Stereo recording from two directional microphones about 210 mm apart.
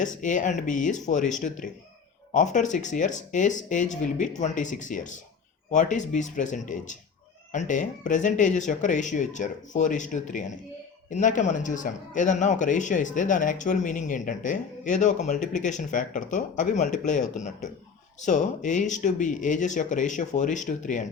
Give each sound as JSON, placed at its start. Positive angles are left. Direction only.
{"t": 0.0, "sound": "a man's voice", "side_deg": 35}